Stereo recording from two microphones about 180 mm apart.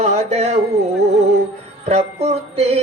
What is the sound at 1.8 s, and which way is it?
Music, 35° right (ahead or behind).